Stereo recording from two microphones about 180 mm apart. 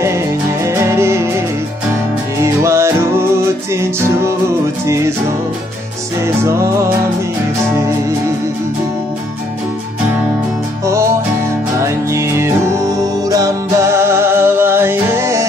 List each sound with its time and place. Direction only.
0.7 s music: 15° right (ahead or behind)
2.3 s music: 15° right (ahead or behind)
4.8 s music: 15° right (ahead or behind)
6.2 s music: 15° right (ahead or behind)
11.8 s music: 15° right (ahead or behind)